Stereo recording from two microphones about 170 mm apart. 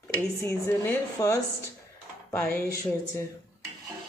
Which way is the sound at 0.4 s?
15° left (ahead or behind).